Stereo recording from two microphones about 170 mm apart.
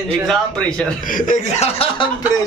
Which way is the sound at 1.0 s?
50° left (ahead or behind).